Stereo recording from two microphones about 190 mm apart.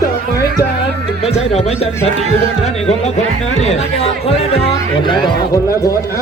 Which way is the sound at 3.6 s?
35° left (ahead or behind).